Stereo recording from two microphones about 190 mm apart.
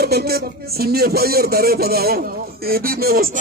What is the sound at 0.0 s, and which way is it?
Speech, 55° right (ahead or behind).